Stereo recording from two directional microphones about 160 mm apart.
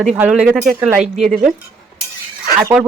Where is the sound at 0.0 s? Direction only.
5° right (ahead or behind).